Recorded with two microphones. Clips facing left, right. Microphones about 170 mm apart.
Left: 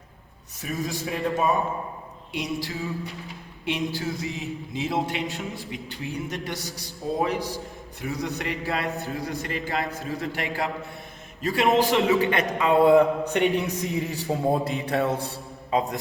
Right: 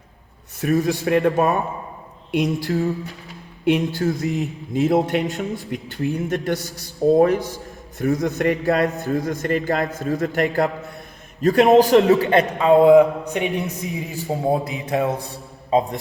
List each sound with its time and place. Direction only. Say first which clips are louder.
0.6 s speech: right 10 dB; 65° right (ahead or behind)
2.3 s a man's voice: right 9 dB; 55° right (ahead or behind); by 12.5 s 35° right (ahead or behind)
12.5 s a sound: right 5 dB; 20° right (ahead or behind)
14.0 s speech: right 4 dB; centre (ahead or behind)
14.9 s mantra: right 4 dB; 20° right (ahead or behind)
15.3 s a man's voice: right 6 dB; 25° right (ahead or behind)